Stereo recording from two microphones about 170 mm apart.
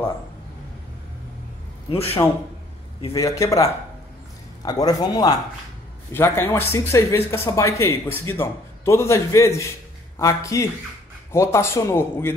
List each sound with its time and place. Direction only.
2.2 s a man's voice: 10° left (ahead or behind)